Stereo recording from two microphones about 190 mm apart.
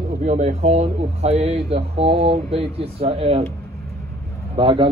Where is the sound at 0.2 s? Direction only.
35° right (ahead or behind).